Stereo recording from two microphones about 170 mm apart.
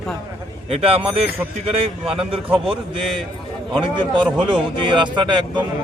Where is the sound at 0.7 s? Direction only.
35° right (ahead or behind).